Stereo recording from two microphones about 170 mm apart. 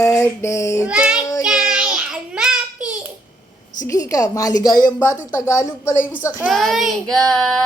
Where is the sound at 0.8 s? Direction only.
5° right (ahead or behind).